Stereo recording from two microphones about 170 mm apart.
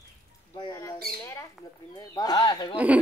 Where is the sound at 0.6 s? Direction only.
20° left (ahead or behind).